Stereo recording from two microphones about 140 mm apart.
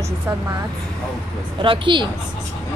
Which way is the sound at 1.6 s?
35° right (ahead or behind).